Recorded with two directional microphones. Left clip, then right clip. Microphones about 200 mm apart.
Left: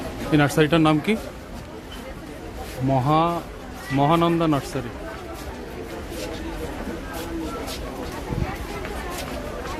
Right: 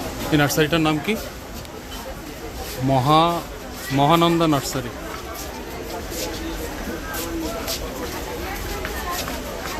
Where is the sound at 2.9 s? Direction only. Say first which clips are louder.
Right 3 dB; 5° right (ahead or behind).